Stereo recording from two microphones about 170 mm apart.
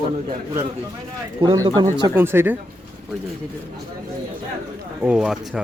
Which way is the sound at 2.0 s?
15° right (ahead or behind).